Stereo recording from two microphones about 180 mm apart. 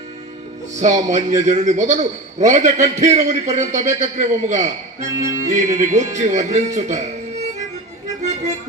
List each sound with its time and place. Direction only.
0.8 s a man's voice: 40° right (ahead or behind)
5.0 s music: 20° right (ahead or behind)
5.5 s a man's voice: 40° right (ahead or behind)